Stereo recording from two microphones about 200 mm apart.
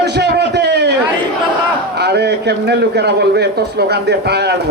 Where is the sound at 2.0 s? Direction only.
55° right (ahead or behind).